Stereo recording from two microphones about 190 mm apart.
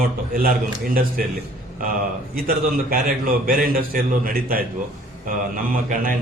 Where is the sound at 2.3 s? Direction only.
50° right (ahead or behind).